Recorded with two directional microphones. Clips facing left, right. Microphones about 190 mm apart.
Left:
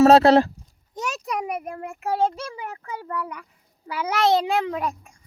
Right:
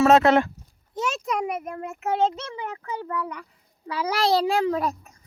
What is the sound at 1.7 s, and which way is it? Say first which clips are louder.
Speech: even; 35° left (ahead or behind).